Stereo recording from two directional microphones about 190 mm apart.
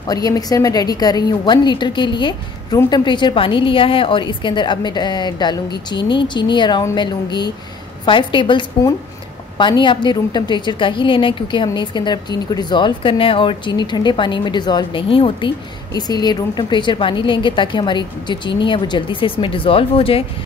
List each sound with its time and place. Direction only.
0.1 s a woman's voice: 20° left (ahead or behind)